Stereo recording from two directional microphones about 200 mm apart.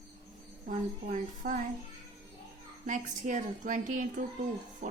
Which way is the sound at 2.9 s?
40° right (ahead or behind).